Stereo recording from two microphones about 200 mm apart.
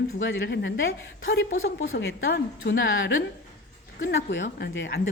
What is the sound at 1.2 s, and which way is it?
Speech, 55° left (ahead or behind).